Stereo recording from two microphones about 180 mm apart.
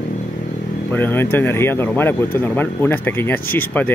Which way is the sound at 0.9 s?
10° left (ahead or behind).